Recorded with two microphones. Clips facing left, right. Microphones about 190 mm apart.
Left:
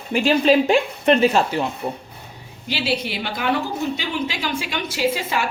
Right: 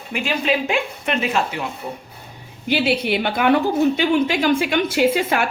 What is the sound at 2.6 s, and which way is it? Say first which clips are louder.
A woman's voice: right 5 dB; 55° right (ahead or behind).